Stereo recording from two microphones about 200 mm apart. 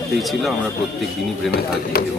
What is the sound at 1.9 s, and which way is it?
Speech, 50° left (ahead or behind).